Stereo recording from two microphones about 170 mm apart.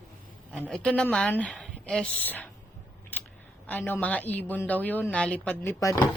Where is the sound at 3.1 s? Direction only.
10° left (ahead or behind).